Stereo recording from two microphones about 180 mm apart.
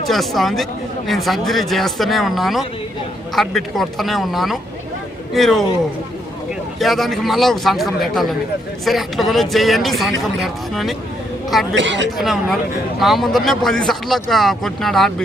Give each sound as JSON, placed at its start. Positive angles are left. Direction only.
{"t": 0.1, "sound": "speech", "side_deg": 0}
{"t": 6.7, "sound": "speech", "side_deg": 0}
{"t": 11.7, "sound": "speech", "side_deg": -90}
{"t": 12.1, "sound": "speech", "side_deg": 0}